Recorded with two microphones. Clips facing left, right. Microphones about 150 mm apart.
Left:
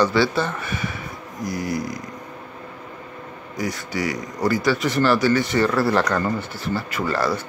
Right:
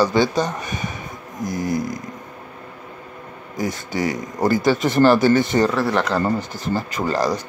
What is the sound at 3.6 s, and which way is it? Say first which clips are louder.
Speech: right 2 dB; 25° right (ahead or behind).